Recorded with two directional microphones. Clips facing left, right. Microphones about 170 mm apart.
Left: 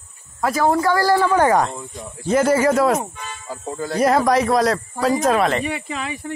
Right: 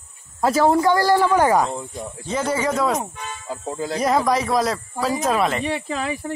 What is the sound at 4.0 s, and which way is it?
Speech, centre (ahead or behind).